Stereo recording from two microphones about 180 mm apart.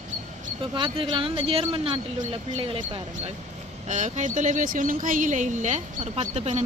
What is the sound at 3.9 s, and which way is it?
Speech, 45° right (ahead or behind).